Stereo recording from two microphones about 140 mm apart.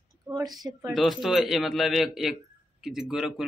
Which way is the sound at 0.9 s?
Centre (ahead or behind).